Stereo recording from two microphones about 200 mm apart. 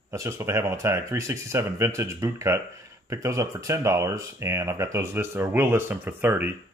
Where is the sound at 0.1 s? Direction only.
15° right (ahead or behind).